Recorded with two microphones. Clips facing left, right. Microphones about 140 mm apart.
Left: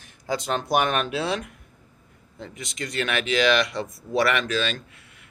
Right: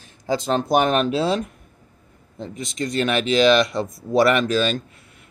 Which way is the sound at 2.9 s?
35° right (ahead or behind).